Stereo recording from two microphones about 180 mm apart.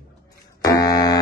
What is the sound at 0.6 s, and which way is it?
Buzzer, 20° left (ahead or behind).